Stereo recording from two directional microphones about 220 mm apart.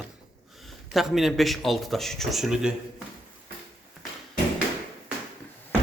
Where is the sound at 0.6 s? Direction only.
Centre (ahead or behind).